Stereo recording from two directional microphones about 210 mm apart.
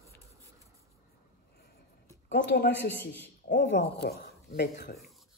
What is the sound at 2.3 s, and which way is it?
A woman's voice, 55° left (ahead or behind).